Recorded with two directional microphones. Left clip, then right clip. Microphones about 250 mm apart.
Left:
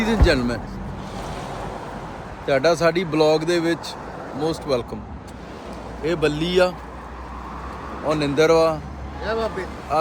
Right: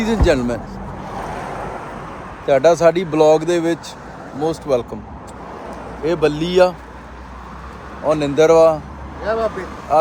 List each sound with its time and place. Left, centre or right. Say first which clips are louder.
0.0 s speech: right 3 dB; centre
1.1 s waves: right 6 dB; right
2.5 s speech: right 6 dB; centre
6.1 s speech: right 4 dB; centre
8.0 s speech: right 5 dB; centre
9.2 s speech: right 5 dB; centre
9.9 s speech: right 7 dB; centre